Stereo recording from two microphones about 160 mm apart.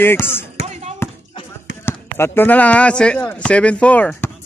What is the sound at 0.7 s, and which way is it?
Bouncing, 45° right (ahead or behind).